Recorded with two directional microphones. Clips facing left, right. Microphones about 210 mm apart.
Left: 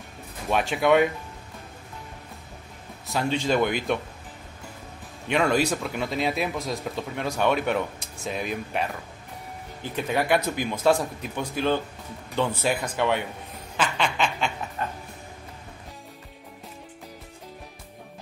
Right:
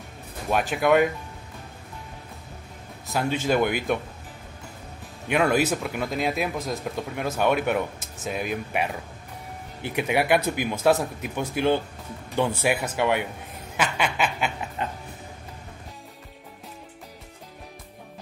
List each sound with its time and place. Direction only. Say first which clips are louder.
0.5 s speech: even; centre (ahead or behind)
3.1 s speech: even; 5° right (ahead or behind)
5.3 s speech: right 1 dB; 5° right (ahead or behind)
9.8 s speech: right 2 dB; 15° right (ahead or behind)
13.7 s a sound: even; 10° right (ahead or behind)